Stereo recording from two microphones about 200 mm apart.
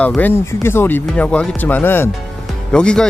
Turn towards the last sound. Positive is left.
turn(degrees=5)  # may be behind; listen again after turning